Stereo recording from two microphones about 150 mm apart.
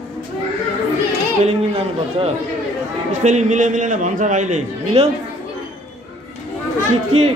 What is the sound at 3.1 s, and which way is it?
A man's voice, 55° right (ahead or behind).